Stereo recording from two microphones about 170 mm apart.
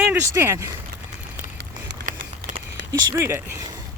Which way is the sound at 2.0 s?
50° right (ahead or behind).